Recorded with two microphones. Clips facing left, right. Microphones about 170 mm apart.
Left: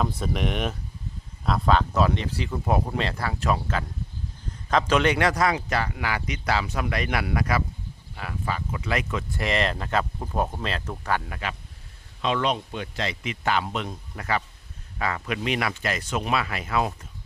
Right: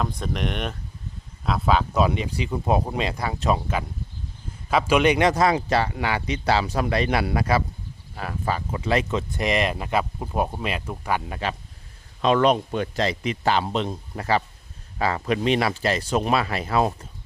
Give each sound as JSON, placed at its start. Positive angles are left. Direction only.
{"t": 0.0, "sound": "speech", "side_deg": 5}
{"t": 11.3, "sound": "a man's voice", "side_deg": -30}
{"t": 12.2, "sound": "a man's voice", "side_deg": -45}